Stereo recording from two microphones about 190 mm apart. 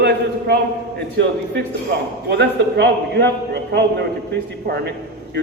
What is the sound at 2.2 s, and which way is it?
A man's voice, 65° right (ahead or behind).